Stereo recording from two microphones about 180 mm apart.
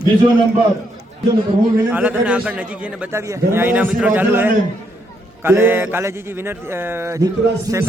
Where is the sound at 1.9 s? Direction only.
10° right (ahead or behind).